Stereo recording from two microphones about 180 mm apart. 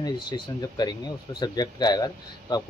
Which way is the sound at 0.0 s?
20° left (ahead or behind).